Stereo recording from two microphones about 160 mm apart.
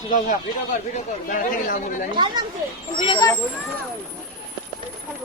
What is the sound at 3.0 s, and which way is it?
Speech, 35° left (ahead or behind).